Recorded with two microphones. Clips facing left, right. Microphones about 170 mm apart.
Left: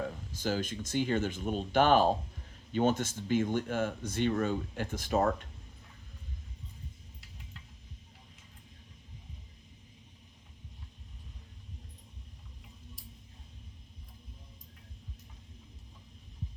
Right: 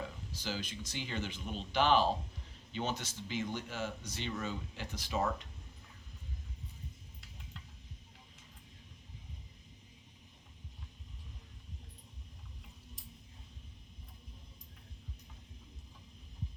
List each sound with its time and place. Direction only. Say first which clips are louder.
0.0 s speech: left 7 dB; 50° left (ahead or behind)